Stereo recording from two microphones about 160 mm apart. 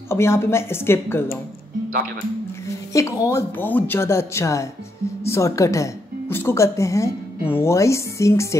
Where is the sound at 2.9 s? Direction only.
20° left (ahead or behind).